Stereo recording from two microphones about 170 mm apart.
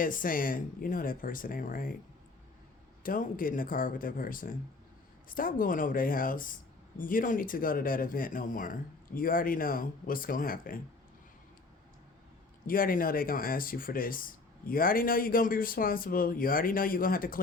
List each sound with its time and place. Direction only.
0.0 s speech: 55° left (ahead or behind)
3.0 s speech: 55° left (ahead or behind)
12.6 s speech: 55° left (ahead or behind)